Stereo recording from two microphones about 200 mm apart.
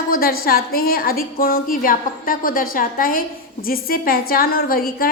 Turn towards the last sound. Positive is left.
turn(degrees=45)  # may be behind; listen again after turning